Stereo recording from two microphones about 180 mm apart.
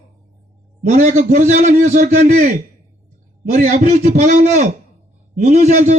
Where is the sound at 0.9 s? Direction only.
40° right (ahead or behind).